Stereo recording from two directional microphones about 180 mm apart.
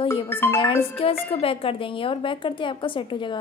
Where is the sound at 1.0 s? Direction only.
30° left (ahead or behind).